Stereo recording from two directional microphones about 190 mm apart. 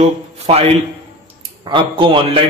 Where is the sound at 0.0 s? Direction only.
30° right (ahead or behind).